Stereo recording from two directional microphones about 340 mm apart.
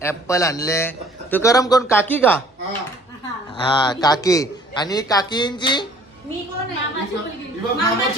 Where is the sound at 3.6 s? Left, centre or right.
Centre.